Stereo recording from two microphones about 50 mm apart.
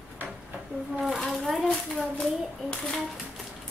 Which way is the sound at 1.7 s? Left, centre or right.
Left.